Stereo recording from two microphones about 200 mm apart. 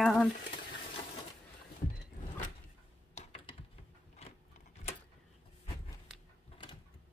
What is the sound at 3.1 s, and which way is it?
Typing, 35° left (ahead or behind).